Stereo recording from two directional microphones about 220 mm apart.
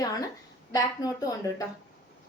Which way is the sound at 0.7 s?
15° left (ahead or behind).